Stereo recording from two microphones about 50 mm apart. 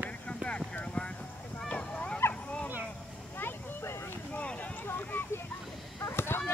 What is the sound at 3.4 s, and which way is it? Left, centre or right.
Vehicle, left.